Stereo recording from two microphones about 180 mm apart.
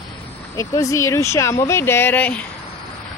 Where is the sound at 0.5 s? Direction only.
20° left (ahead or behind).